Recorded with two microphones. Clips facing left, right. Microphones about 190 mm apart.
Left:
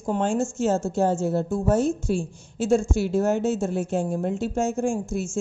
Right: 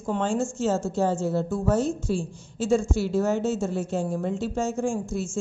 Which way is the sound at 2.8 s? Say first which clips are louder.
Left 1 dB; 50° left (ahead or behind).